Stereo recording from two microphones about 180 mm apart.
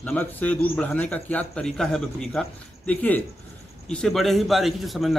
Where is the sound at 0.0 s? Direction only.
10° left (ahead or behind).